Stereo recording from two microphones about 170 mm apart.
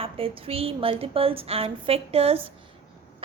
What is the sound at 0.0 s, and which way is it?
A woman's voice, 35° right (ahead or behind).